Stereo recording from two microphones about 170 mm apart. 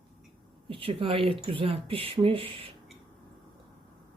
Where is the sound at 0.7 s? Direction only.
30° right (ahead or behind).